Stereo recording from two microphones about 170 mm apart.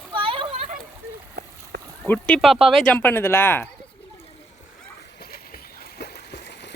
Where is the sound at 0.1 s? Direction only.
30° right (ahead or behind).